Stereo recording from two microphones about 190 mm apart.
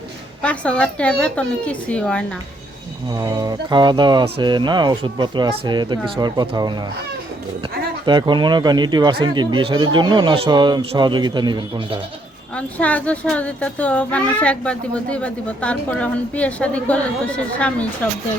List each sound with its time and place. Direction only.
0.4 s speech: 5° left (ahead or behind)
3.2 s speech: 20° right (ahead or behind)
8.0 s speech: 25° right (ahead or behind)
12.5 s speech: 5° left (ahead or behind)